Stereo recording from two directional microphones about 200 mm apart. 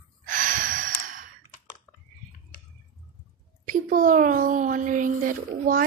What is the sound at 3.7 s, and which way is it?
Speech, 45° right (ahead or behind).